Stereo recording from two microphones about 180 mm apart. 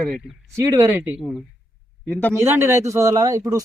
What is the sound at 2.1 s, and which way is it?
Speech, 10° left (ahead or behind).